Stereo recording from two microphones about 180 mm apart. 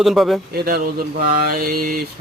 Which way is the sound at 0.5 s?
55° right (ahead or behind).